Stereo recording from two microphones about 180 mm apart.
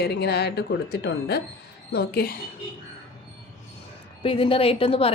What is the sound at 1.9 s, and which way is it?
Speech, 60° left (ahead or behind).